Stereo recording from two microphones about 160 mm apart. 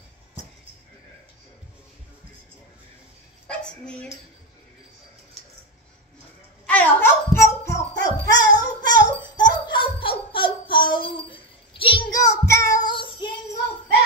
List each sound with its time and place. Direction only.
3.4 s bow-wow: 5° left (ahead or behind)
6.6 s hands: 10° left (ahead or behind); by 11.0 s 30° left (ahead or behind)
11.2 s child singing: 35° left (ahead or behind)
12.8 s child singing: 30° left (ahead or behind)